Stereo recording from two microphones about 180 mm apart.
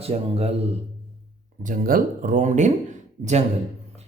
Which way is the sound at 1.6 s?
50° right (ahead or behind).